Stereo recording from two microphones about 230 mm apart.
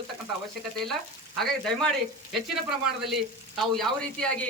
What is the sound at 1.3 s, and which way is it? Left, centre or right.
Speech, centre.